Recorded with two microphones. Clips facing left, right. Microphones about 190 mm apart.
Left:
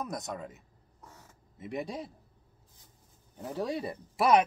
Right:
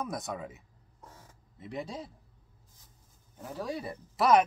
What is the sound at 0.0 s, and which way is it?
Speech, centre (ahead or behind).